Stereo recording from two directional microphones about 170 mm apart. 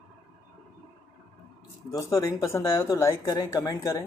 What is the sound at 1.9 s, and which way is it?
Speech, 20° left (ahead or behind).